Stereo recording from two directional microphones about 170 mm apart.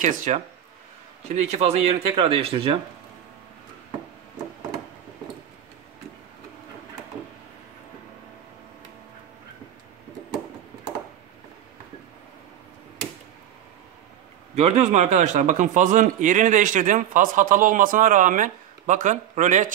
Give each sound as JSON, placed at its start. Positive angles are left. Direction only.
{"t": 0.0, "sound": "a man's voice", "side_deg": -45}
{"t": 14.5, "sound": "a man's voice", "side_deg": -40}